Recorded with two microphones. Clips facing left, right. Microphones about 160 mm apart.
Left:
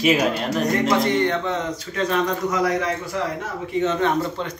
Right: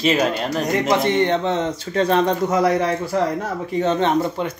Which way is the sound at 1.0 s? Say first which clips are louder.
Right 3 dB; 25° right (ahead or behind).